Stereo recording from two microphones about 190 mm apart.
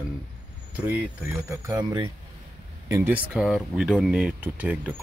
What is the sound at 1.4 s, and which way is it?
Speech, 20° right (ahead or behind).